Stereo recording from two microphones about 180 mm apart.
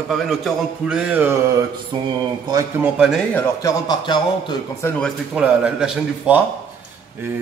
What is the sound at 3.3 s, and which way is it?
A man's voice, 15° left (ahead or behind).